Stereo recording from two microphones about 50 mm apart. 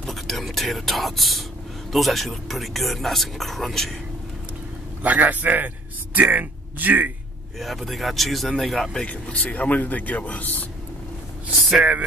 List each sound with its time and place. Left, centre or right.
0.0 s speech: centre
5.0 s a man's voice: right
7.5 s speech: centre
9.0 s a man's voice: left